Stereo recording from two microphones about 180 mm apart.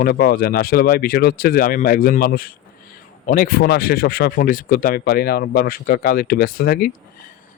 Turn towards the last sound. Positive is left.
turn(degrees=55)  # may be behind; listen again after turning